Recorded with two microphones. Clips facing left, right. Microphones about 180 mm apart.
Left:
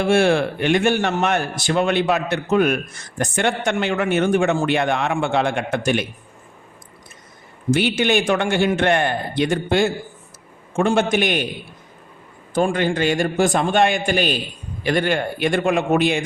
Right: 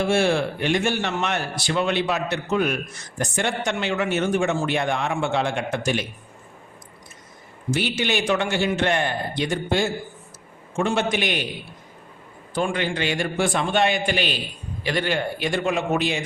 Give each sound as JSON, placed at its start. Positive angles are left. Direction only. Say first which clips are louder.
{"t": 0.1, "sound": "speech", "louder": "left 4 dB", "side_deg": 60}
{"t": 7.7, "sound": "a man's voice", "louder": "left 6 dB", "side_deg": 60}
{"t": 12.5, "sound": "a man's voice", "louder": "left 5 dB", "side_deg": 45}